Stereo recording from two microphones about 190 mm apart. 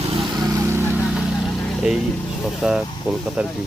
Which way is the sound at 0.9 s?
Centre (ahead or behind).